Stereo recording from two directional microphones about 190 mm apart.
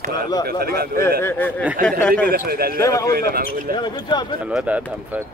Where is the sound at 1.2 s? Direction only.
10° left (ahead or behind).